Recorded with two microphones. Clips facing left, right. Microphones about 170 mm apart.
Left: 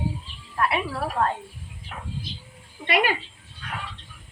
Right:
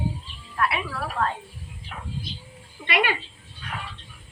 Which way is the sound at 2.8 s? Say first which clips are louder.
Left 2 dB; 35° left (ahead or behind).